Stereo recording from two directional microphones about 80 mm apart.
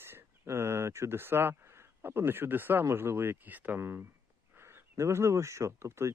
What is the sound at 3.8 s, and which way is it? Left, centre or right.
Speech, right.